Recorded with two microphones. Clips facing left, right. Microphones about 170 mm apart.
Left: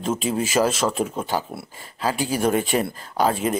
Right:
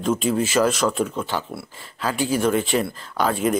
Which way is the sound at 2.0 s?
40° left (ahead or behind).